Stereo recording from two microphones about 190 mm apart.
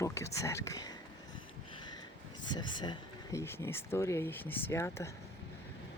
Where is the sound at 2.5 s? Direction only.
20° left (ahead or behind).